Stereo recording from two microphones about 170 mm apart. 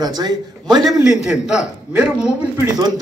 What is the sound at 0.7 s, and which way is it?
A man's voice, centre (ahead or behind).